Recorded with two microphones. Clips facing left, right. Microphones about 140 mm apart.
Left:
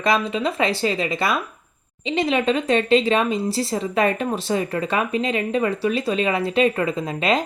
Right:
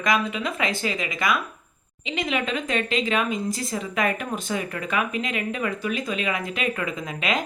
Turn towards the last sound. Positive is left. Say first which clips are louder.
# left 6 dB
turn(degrees=30)  # may be behind; listen again after turning